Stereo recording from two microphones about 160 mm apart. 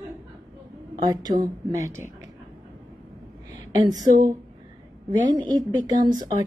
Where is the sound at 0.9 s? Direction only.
25° right (ahead or behind).